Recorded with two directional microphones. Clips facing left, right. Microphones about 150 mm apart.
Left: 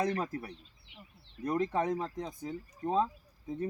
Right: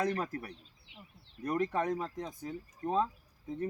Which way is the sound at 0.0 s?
20° left (ahead or behind).